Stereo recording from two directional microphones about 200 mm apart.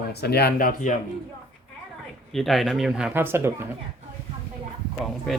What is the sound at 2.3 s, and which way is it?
Speech, centre (ahead or behind).